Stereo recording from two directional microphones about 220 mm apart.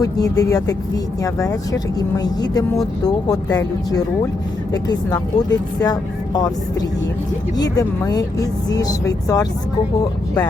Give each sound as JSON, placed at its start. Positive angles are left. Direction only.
{"t": 0.0, "sound": "speech", "side_deg": 15}
{"t": 7.5, "sound": "speech", "side_deg": 15}